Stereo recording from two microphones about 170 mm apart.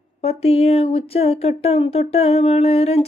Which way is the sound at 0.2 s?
35° left (ahead or behind).